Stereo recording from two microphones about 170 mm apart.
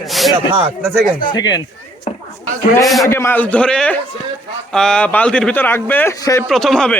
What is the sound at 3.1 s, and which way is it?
Speech, 15° left (ahead or behind).